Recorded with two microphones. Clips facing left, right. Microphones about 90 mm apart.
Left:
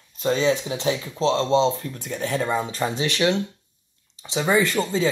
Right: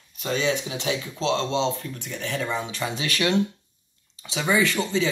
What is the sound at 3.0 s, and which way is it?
Speech, 25° left (ahead or behind).